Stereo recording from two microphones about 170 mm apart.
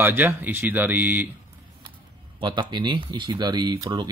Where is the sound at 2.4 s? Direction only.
30° right (ahead or behind).